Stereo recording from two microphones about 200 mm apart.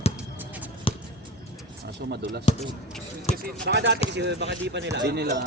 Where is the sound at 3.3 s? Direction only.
35° left (ahead or behind).